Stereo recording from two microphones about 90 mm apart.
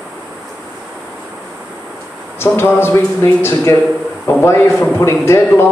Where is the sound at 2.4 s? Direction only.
25° left (ahead or behind).